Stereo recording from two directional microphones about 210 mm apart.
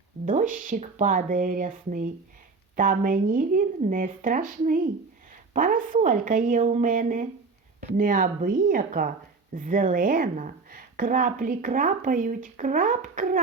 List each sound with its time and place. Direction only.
0.3 s a woman's voice: 40° right (ahead or behind)